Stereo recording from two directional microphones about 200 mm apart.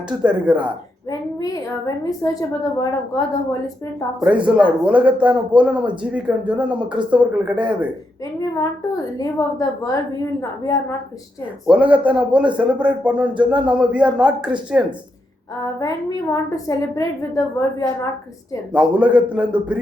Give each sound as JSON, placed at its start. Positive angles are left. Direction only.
{"t": 0.2, "sound": "speech", "side_deg": -5}
{"t": 1.4, "sound": "a woman's voice", "side_deg": 15}
{"t": 4.2, "sound": "speech", "side_deg": -5}
{"t": 8.4, "sound": "a woman's voice", "side_deg": 20}
{"t": 11.6, "sound": "speech", "side_deg": -5}
{"t": 15.6, "sound": "a woman's voice", "side_deg": 15}
{"t": 18.7, "sound": "speech", "side_deg": -5}